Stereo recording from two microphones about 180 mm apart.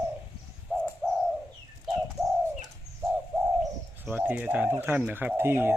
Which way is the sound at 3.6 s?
5° right (ahead or behind).